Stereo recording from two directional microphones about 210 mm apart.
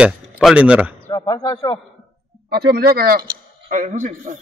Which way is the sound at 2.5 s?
50° right (ahead or behind).